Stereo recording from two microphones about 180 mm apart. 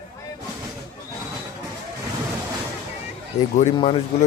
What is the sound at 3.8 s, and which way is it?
Speech, 30° left (ahead or behind).